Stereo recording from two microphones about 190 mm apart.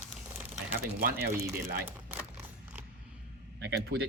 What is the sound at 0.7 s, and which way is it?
Speech, 50° right (ahead or behind).